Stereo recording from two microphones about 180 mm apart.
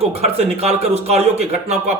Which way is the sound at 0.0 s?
35° right (ahead or behind).